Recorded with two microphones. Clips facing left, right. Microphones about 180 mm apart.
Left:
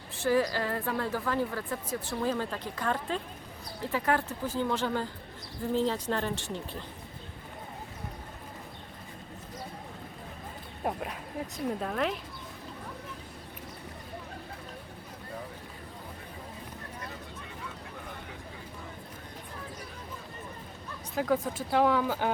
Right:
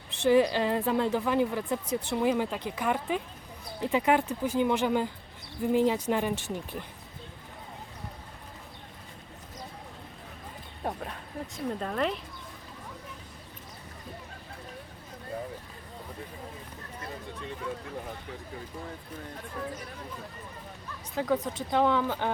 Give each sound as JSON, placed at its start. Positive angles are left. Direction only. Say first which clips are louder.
{"t": 0.2, "sound": "a woman's voice", "louder": "right 4 dB", "side_deg": -20}
{"t": 10.8, "sound": "speech", "louder": "left 1 dB", "side_deg": 5}
{"t": 21.2, "sound": "speech", "louder": "even", "side_deg": 5}